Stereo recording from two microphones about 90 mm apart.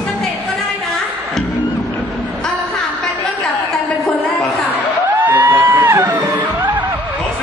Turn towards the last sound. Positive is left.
turn(degrees=-25)  # may be behind; listen again after turning